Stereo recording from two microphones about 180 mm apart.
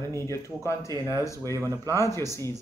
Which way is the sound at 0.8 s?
20° right (ahead or behind).